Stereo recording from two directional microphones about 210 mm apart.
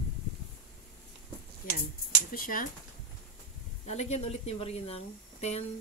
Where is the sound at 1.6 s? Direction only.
40° left (ahead or behind).